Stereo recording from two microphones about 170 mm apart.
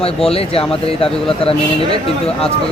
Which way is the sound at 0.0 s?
35° left (ahead or behind).